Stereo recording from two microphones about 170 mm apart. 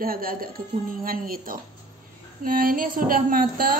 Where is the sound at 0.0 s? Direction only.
60° right (ahead or behind).